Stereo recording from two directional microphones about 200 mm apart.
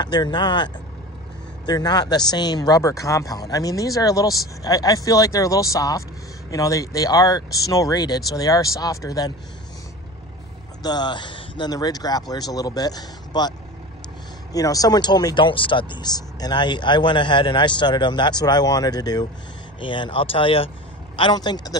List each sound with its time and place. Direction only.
0.0 s speech: 20° left (ahead or behind)
1.7 s speech: 20° left (ahead or behind)
10.8 s speech: 20° left (ahead or behind)